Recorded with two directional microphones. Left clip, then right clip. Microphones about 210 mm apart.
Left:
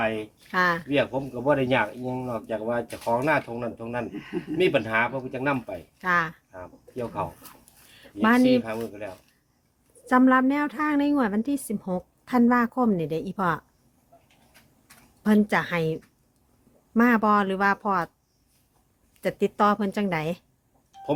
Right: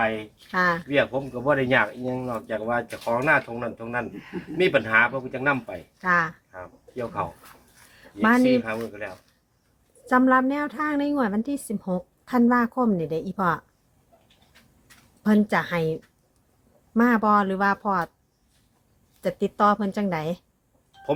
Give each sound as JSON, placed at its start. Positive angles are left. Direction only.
{"t": 0.0, "sound": "speech", "side_deg": 0}
{"t": 8.4, "sound": "speech", "side_deg": -5}
{"t": 10.3, "sound": "speech", "side_deg": 0}
{"t": 10.9, "sound": "speech", "side_deg": 20}
{"t": 11.7, "sound": "speech", "side_deg": 0}
{"t": 13.0, "sound": "speech", "side_deg": 15}
{"t": 13.3, "sound": "speech", "side_deg": 0}
{"t": 15.2, "sound": "a woman's voice", "side_deg": 0}
{"t": 16.9, "sound": "speech", "side_deg": 0}
{"t": 19.4, "sound": "speech", "side_deg": 0}